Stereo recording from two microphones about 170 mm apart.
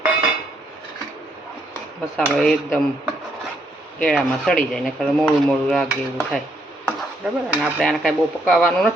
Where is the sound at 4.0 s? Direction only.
Centre (ahead or behind).